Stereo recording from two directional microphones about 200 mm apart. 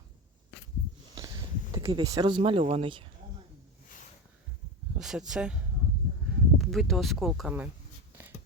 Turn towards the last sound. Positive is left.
turn(degrees=-5)  # may be behind; listen again after turning